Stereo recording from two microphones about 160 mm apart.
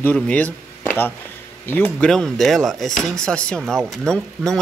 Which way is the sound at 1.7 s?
10° left (ahead or behind).